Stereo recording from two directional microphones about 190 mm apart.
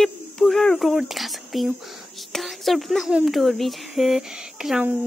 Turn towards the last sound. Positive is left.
turn(degrees=-5)  # may be behind; listen again after turning